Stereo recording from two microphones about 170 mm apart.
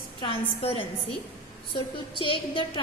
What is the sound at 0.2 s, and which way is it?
Speech, 35° left (ahead or behind).